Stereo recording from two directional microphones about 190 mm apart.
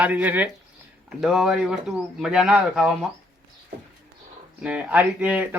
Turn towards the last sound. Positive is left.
turn(degrees=-5)  # may be behind; listen again after turning